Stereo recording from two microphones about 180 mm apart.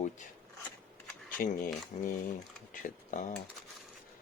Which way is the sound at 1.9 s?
35° left (ahead or behind).